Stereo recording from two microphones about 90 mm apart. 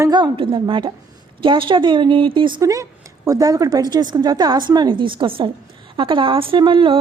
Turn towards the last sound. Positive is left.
turn(degrees=-75)  # may be behind; listen again after turning